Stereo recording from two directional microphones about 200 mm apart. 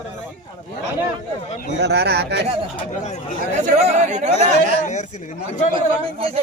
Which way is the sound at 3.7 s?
35° right (ahead or behind).